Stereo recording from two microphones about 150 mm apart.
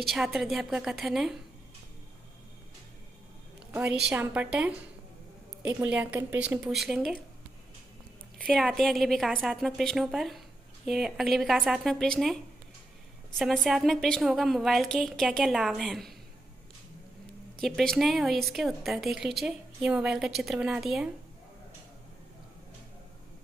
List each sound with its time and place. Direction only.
0.0 s a woman's voice: centre (ahead or behind)
3.7 s speech: 15° right (ahead or behind)
8.4 s a woman's voice: 5° left (ahead or behind)
13.4 s a woman's voice: centre (ahead or behind)
17.6 s a woman's voice: centre (ahead or behind)